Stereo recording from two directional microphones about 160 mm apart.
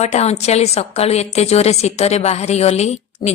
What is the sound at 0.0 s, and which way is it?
A woman's voice, 45° left (ahead or behind).